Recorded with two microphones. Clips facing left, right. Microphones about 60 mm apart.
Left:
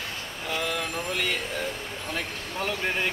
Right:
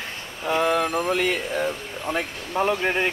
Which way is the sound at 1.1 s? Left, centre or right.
Centre.